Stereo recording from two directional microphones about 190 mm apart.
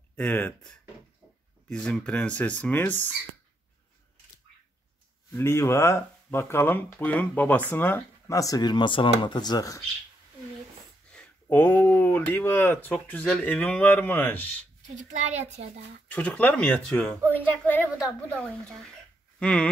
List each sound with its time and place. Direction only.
0.1 s speech: 10° left (ahead or behind)
5.3 s speech: 15° left (ahead or behind)
11.4 s speech: 10° left (ahead or behind)
15.0 s a child's voice: 40° right (ahead or behind)
16.1 s speech: 5° left (ahead or behind)